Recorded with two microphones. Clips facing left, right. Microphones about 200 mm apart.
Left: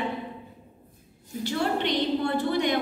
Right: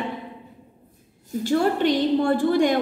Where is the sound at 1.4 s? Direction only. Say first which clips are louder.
Right 6 dB; 45° right (ahead or behind).